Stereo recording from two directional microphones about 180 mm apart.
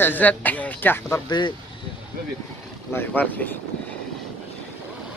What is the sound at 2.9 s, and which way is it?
Speech, 10° left (ahead or behind).